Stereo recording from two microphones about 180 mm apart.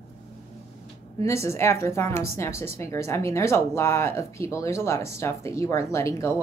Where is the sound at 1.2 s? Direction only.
15° left (ahead or behind).